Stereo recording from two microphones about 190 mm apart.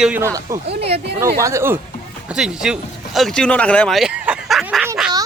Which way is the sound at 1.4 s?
15° right (ahead or behind).